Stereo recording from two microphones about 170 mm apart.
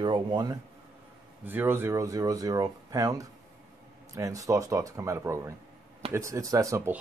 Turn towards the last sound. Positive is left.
turn(degrees=-15)  # may be behind; listen again after turning